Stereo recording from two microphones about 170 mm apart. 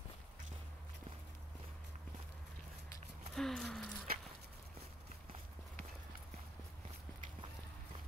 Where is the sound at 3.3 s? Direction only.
Centre (ahead or behind).